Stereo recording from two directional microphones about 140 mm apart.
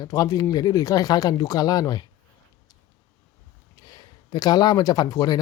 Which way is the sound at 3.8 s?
25° left (ahead or behind).